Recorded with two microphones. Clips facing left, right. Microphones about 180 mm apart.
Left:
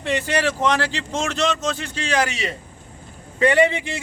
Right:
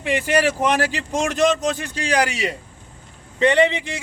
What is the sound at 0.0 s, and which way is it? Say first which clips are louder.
Speech: right 2 dB; 15° right (ahead or behind).